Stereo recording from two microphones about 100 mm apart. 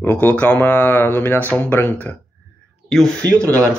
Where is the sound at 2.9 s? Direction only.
5° left (ahead or behind).